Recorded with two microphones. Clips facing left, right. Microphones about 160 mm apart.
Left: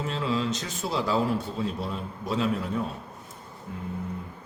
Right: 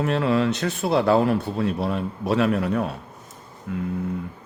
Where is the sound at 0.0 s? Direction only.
65° right (ahead or behind).